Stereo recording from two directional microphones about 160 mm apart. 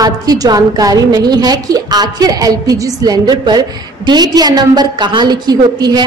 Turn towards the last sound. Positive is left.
turn(degrees=-25)  # may be behind; listen again after turning